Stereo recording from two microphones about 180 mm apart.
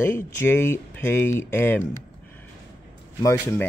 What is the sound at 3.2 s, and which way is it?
Speech, 15° left (ahead or behind).